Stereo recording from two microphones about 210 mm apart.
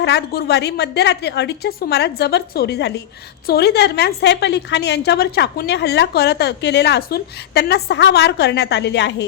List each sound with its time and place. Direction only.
0.0 s a woman's voice: 55° left (ahead or behind)